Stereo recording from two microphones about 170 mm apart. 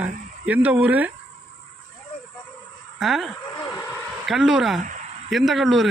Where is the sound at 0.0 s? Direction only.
10° right (ahead or behind).